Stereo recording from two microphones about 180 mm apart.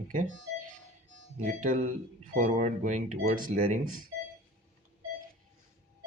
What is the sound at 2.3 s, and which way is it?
Speech, 45° right (ahead or behind).